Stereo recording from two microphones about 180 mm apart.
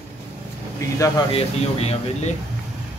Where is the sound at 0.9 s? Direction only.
20° left (ahead or behind).